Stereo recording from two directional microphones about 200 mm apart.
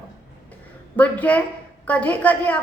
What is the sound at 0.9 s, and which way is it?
A woman's voice, 5° left (ahead or behind).